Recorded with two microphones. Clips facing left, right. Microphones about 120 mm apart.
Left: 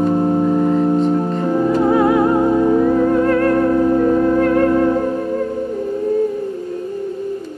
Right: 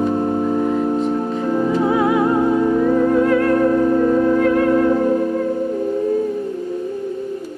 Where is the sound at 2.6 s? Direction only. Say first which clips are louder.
Left 2 dB; 20° left (ahead or behind).